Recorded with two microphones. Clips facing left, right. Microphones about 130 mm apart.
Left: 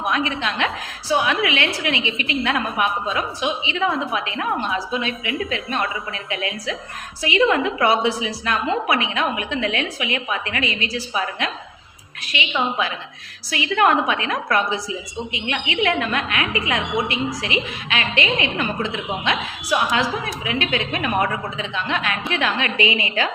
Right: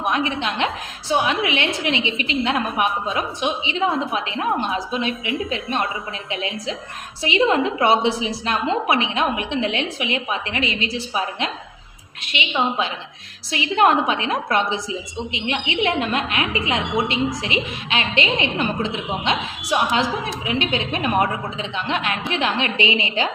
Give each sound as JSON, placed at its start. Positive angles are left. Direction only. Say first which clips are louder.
{"t": 0.1, "sound": "a woman's voice", "louder": "right 1 dB", "side_deg": -20}